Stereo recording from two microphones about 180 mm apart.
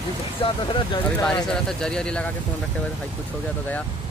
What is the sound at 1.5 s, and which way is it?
Speech, 5° left (ahead or behind).